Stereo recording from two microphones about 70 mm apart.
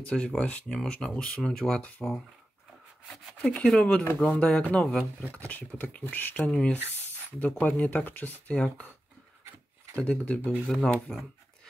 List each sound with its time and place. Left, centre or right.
0.0 s speech: centre
3.4 s speech: centre
7.3 s speech: left
8.5 s speech: centre
9.9 s speech: centre
10.7 s speech: centre